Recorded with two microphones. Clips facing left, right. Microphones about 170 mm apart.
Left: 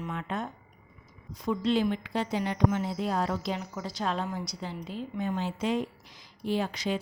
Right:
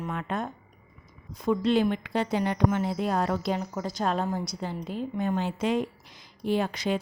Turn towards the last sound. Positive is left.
turn(degrees=-55)  # may be behind; listen again after turning